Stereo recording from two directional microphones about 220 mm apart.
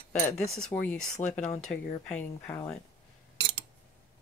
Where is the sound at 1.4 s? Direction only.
35° left (ahead or behind).